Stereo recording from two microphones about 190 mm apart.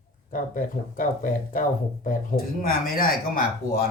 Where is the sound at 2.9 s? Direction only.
50° left (ahead or behind).